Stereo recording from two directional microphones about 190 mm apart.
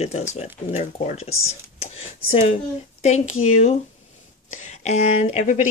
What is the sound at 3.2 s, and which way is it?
Speech, 90° left.